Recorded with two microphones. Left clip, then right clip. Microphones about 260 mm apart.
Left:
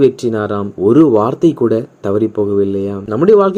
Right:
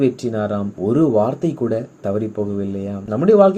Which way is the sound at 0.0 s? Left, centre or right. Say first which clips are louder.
Left 7 dB; left.